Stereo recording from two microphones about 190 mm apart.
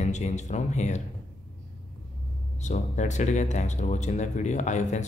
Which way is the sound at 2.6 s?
40° left (ahead or behind).